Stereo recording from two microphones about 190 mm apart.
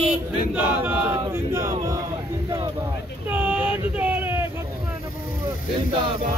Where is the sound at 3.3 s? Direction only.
5° right (ahead or behind).